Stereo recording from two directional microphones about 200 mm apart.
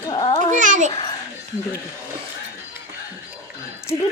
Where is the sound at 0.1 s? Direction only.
25° left (ahead or behind).